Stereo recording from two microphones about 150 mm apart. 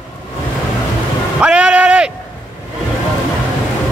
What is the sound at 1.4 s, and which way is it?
Vehicle, 5° right (ahead or behind).